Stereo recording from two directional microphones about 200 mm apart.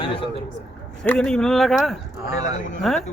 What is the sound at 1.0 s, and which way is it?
Speech, 5° left (ahead or behind).